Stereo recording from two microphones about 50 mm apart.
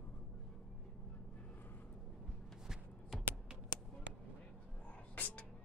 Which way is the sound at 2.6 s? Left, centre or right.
Centre.